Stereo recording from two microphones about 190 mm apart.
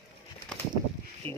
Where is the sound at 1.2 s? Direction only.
10° left (ahead or behind).